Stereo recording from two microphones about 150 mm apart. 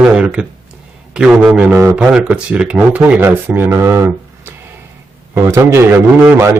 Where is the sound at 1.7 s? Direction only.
20° right (ahead or behind).